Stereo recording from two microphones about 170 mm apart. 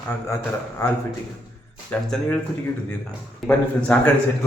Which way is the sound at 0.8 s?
20° left (ahead or behind).